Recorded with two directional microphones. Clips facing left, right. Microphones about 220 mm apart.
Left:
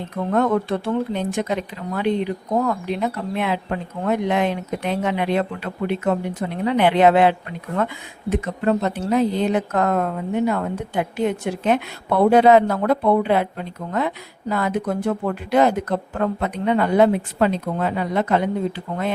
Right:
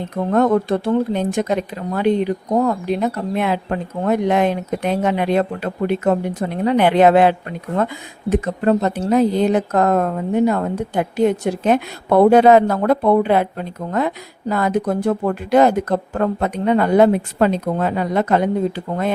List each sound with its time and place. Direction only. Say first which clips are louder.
0.3 s speech: right 4 dB; 40° right (ahead or behind)